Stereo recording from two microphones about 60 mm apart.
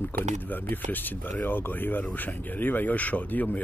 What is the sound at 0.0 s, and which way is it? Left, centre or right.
Speech, left.